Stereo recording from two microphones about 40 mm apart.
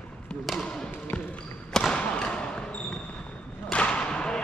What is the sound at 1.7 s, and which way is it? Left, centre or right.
Basketball bounce, centre.